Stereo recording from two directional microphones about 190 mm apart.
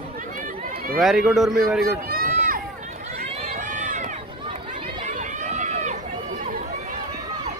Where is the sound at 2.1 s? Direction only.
50° right (ahead or behind).